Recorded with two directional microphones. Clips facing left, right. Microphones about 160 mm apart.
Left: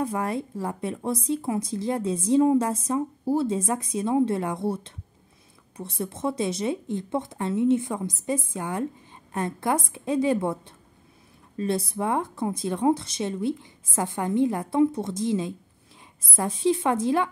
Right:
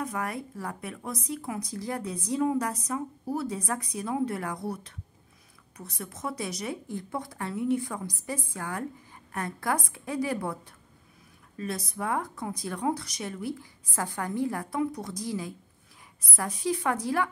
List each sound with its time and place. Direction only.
0.0 s speech: 30° left (ahead or behind)